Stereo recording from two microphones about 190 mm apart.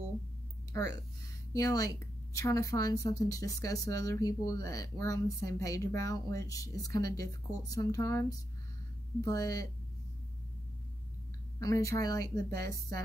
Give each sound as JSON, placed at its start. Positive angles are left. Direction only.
{"t": 0.7, "sound": "speech", "side_deg": 20}
{"t": 11.6, "sound": "speech", "side_deg": 15}